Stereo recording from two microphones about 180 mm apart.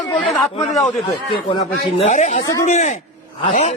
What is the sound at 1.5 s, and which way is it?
A man's voice, 30° left (ahead or behind).